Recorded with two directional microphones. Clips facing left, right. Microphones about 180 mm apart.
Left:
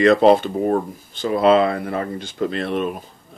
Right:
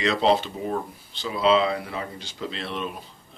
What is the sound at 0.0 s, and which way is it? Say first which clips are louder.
Speech: left 9 dB; 50° left (ahead or behind).